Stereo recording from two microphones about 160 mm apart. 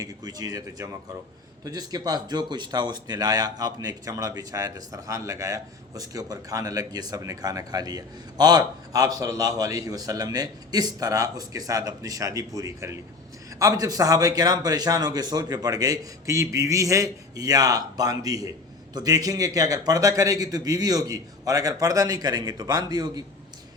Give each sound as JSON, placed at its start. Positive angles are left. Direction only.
{"t": 0.0, "sound": "a man's voice", "side_deg": -25}